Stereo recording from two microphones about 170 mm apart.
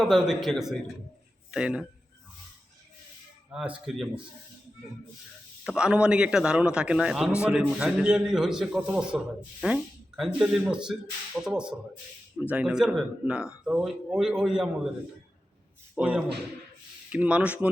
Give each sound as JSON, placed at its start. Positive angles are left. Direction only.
{"t": 0.0, "sound": "a man's voice", "side_deg": 0}
{"t": 3.5, "sound": "a man's voice", "side_deg": -5}
{"t": 5.6, "sound": "a man's voice", "side_deg": -5}
{"t": 16.0, "sound": "speech", "side_deg": -5}